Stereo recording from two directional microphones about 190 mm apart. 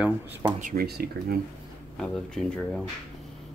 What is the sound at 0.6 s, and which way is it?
Speech, 45° right (ahead or behind).